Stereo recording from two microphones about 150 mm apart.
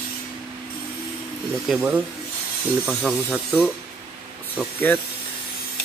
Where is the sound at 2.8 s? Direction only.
5° right (ahead or behind).